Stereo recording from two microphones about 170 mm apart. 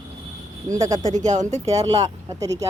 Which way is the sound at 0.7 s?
45° right (ahead or behind).